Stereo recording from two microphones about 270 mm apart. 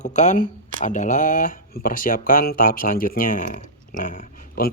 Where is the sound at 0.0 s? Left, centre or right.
Left.